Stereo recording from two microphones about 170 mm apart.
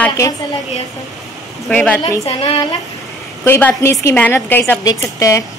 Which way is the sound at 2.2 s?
35° left (ahead or behind).